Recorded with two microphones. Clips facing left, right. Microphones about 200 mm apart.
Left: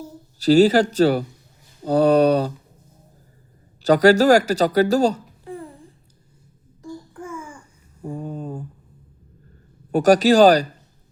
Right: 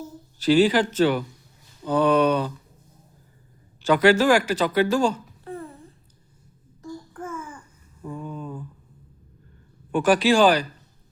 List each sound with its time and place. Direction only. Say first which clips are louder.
0.3 s speech: left 4 dB; 40° left (ahead or behind)
3.8 s speech: left 4 dB; 40° left (ahead or behind)
5.5 s babbling: left 1 dB; 15° left (ahead or behind)
7.1 s babbling: even; 15° left (ahead or behind)
8.0 s a sound: left 4 dB; 45° left (ahead or behind)
9.9 s speech: left 4 dB; 40° left (ahead or behind)